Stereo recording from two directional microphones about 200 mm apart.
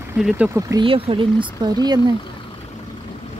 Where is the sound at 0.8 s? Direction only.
25° right (ahead or behind).